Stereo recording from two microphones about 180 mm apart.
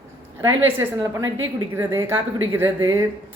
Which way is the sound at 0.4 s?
15° right (ahead or behind).